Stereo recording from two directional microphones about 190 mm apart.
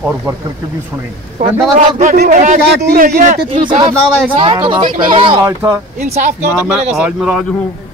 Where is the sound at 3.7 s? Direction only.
25° right (ahead or behind).